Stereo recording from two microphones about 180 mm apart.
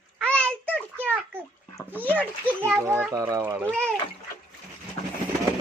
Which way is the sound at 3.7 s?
5° left (ahead or behind).